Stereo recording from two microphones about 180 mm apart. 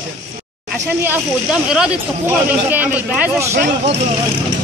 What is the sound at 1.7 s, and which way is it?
Speech, 5° right (ahead or behind).